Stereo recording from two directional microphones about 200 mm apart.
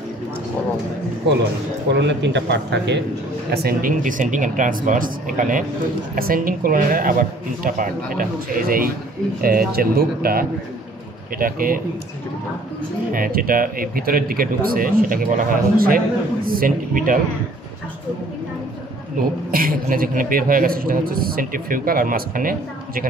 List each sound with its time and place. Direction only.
1.9 s speech: 60° right (ahead or behind)
3.5 s a man's voice: 45° right (ahead or behind)
13.1 s a man's voice: 45° right (ahead or behind)
19.5 s a man's voice: 45° right (ahead or behind)